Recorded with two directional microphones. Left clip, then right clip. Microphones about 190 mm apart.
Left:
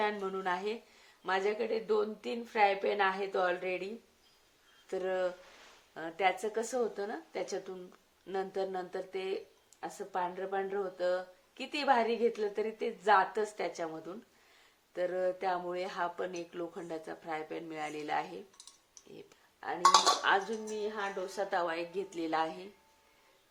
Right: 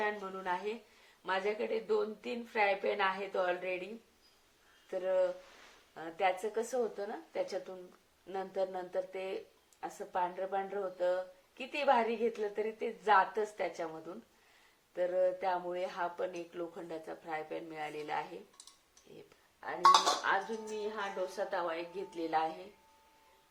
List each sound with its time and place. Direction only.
0.0 s a woman's voice: 45° left (ahead or behind)
4.9 s a woman's voice: 45° left (ahead or behind)
20.3 s speech: 55° left (ahead or behind)
20.8 s a woman's voice: 45° left (ahead or behind)